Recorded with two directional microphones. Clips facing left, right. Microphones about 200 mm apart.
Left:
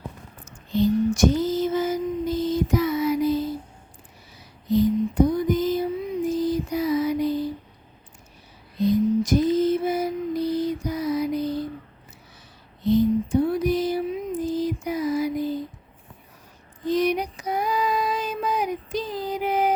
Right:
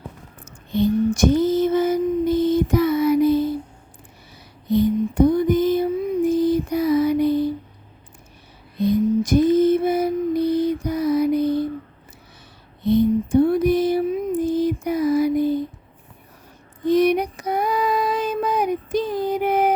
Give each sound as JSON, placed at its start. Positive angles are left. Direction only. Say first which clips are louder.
{"t": 0.4, "sound": "female singing", "louder": "right 1 dB", "side_deg": -55}
{"t": 4.7, "sound": "a sound", "louder": "right 2 dB", "side_deg": -60}
{"t": 8.8, "sound": "lullaby", "louder": "right 2 dB", "side_deg": -55}
{"t": 12.8, "sound": "female singing", "louder": "right 2 dB", "side_deg": -60}
{"t": 16.8, "sound": "female singing", "louder": "right 5 dB", "side_deg": -60}